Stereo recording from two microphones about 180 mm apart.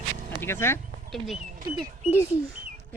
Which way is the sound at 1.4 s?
45° right (ahead or behind).